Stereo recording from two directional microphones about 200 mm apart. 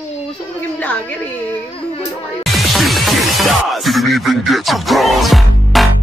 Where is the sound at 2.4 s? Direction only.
Centre (ahead or behind).